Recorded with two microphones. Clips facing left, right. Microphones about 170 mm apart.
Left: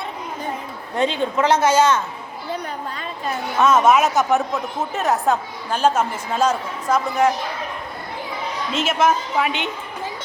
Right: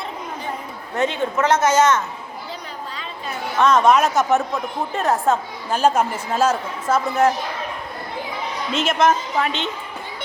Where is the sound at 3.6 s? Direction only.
5° left (ahead or behind).